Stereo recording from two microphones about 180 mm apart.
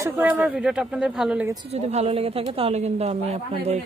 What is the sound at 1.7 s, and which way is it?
Speech, 35° right (ahead or behind).